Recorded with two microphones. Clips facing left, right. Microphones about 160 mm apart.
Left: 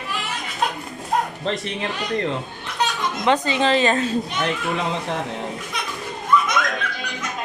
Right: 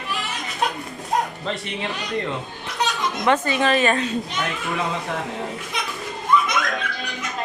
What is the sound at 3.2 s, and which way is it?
Speech, 20° left (ahead or behind).